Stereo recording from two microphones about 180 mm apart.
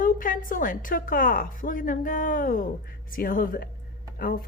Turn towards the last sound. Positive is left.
turn(degrees=55)  # may be behind; listen again after turning